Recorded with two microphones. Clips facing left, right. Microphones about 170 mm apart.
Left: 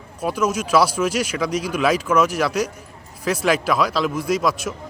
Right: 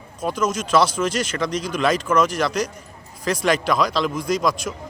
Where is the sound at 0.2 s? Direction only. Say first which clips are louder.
Left 1 dB; 10° left (ahead or behind).